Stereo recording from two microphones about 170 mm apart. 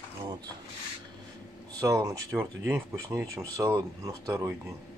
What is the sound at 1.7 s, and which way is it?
Speech, 20° right (ahead or behind).